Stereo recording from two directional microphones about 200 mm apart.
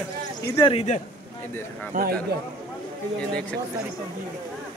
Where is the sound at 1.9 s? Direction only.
45° right (ahead or behind).